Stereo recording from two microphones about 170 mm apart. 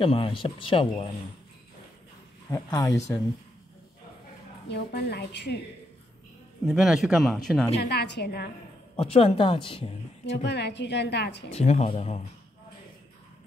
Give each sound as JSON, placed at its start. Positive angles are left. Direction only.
{"t": 0.0, "sound": "speech", "side_deg": 30}
{"t": 2.5, "sound": "speech", "side_deg": 20}
{"t": 4.6, "sound": "a woman's voice", "side_deg": 75}
{"t": 6.6, "sound": "a man's voice", "side_deg": 0}
{"t": 7.8, "sound": "a woman's voice", "side_deg": 85}
{"t": 8.9, "sound": "speech", "side_deg": 35}
{"t": 10.2, "sound": "a woman's voice", "side_deg": 90}
{"t": 11.5, "sound": "speech", "side_deg": 40}